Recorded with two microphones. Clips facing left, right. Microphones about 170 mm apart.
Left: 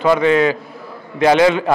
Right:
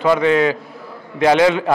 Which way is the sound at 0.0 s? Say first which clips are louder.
Left 1 dB; 20° left (ahead or behind).